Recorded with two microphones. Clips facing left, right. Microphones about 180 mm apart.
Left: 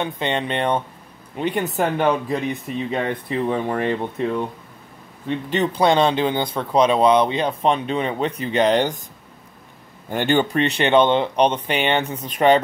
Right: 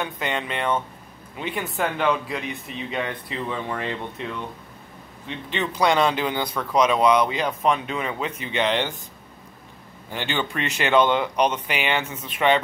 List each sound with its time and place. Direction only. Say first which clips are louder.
0.0 s speech: left 4 dB; 25° left (ahead or behind); by 9.0 s 40° left (ahead or behind)
10.0 s speech: left 9 dB; 50° left (ahead or behind)
10.5 s speech: left 4 dB; 35° left (ahead or behind)